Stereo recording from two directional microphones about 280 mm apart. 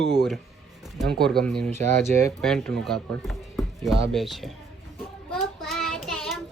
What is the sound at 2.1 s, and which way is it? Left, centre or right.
A child's voice, centre.